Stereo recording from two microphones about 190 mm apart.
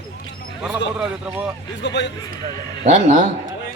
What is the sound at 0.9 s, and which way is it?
Speech, 5° right (ahead or behind).